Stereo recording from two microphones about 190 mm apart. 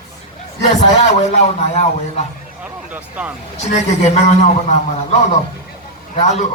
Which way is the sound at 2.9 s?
10° right (ahead or behind).